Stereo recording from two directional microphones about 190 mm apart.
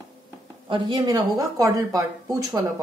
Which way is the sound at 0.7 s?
20° right (ahead or behind).